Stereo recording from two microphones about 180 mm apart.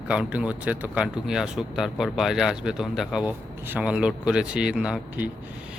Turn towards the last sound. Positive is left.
turn(degrees=-5)  # may be behind; listen again after turning